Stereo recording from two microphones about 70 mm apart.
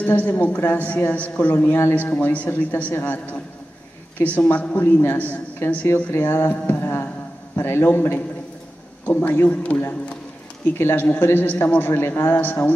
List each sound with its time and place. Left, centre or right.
0.0 s a woman's voice: left
4.4 s a woman's voice: left
6.7 s a sound: left
7.5 s a man's voice: left
10.8 s a man's voice: left